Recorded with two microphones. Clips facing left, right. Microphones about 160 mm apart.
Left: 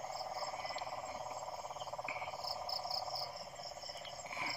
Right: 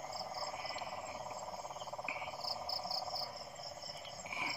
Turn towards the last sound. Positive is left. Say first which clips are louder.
# even
turn(degrees=0)  # may be behind; listen again after turning